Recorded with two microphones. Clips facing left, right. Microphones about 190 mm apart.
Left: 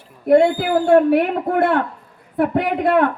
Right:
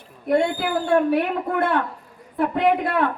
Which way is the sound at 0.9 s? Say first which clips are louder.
Left 5 dB; 55° left (ahead or behind).